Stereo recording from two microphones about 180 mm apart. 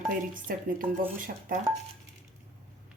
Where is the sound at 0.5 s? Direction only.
55° right (ahead or behind).